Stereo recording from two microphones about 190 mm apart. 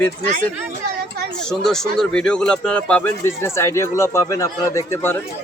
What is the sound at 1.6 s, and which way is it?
Speech, 5° left (ahead or behind).